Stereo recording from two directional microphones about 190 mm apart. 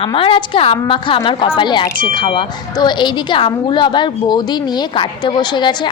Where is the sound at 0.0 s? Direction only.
30° left (ahead or behind).